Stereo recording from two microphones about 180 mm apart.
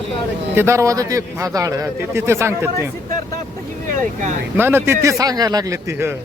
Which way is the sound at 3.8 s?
45° right (ahead or behind).